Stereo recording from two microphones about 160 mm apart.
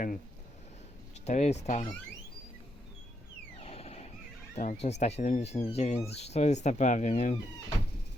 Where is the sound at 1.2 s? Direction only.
45° left (ahead or behind).